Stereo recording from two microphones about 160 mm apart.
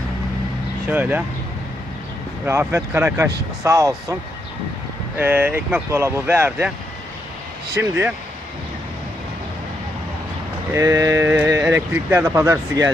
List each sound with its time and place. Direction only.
0.8 s speech: 10° right (ahead or behind)
2.4 s speech: 15° right (ahead or behind)
7.8 s speech: 15° right (ahead or behind)
10.7 s speech: 20° right (ahead or behind)